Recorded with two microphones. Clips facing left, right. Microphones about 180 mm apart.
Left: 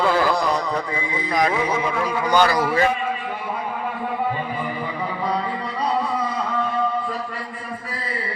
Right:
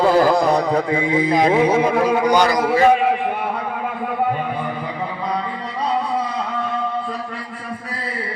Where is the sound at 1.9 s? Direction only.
45° right (ahead or behind).